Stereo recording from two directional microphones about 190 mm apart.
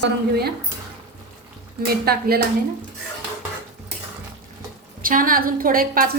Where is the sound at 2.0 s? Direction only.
55° right (ahead or behind).